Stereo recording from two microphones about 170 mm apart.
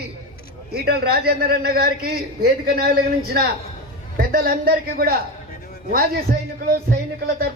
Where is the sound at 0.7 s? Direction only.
65° right (ahead or behind).